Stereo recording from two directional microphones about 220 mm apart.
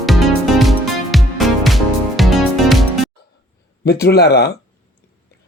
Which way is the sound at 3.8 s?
45° left (ahead or behind).